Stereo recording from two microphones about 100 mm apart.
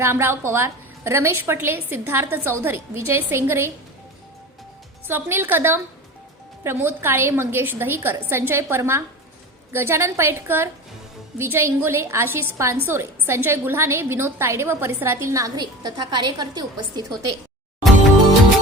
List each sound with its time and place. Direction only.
0.0 s a woman's voice: 25° right (ahead or behind)
5.0 s a woman's voice: 20° right (ahead or behind); by 17.2 s 40° right (ahead or behind)